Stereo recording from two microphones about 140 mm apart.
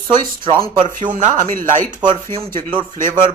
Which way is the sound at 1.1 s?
65° right (ahead or behind).